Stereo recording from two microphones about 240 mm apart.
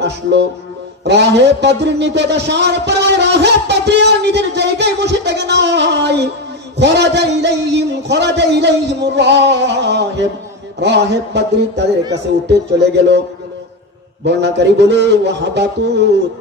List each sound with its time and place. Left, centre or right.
0.0 s a man's voice: right
14.2 s a man's voice: right